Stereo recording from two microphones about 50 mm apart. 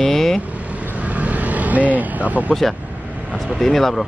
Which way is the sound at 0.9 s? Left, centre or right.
Right.